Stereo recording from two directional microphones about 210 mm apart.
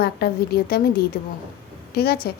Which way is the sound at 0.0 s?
50° left (ahead or behind).